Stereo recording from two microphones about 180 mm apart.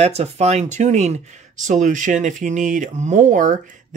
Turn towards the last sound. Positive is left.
turn(degrees=-45)  # may be behind; listen again after turning